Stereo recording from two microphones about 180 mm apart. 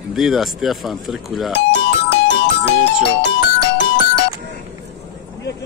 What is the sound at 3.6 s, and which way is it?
Music, 80° left.